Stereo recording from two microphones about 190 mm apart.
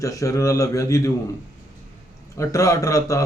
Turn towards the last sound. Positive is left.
turn(degrees=15)  # may be behind; listen again after turning